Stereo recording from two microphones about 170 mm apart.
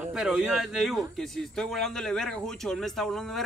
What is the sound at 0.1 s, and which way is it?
Speech, 5° right (ahead or behind).